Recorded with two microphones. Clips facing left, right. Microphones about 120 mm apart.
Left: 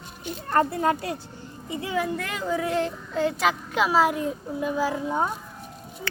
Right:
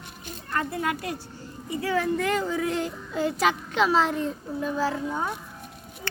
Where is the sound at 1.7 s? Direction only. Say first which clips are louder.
Right 1 dB; 20° left (ahead or behind).